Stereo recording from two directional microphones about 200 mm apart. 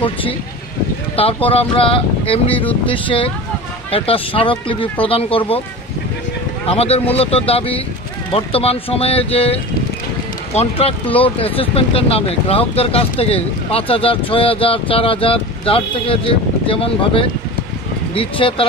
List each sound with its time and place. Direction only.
0.0 s speech: 25° left (ahead or behind)
6.6 s speech: 30° left (ahead or behind)